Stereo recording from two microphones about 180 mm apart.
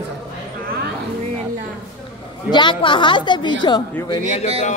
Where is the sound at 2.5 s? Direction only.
25° left (ahead or behind).